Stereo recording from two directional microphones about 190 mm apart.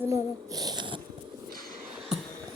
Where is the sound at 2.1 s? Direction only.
5° right (ahead or behind).